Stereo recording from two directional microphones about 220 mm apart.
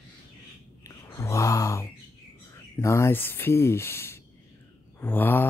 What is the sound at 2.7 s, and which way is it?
Speech, 10° left (ahead or behind).